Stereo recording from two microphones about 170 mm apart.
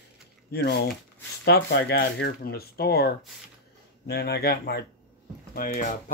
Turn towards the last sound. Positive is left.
turn(degrees=55)  # may be behind; listen again after turning